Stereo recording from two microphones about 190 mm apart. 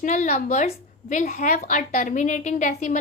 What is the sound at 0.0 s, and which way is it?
A woman's voice, 40° left (ahead or behind).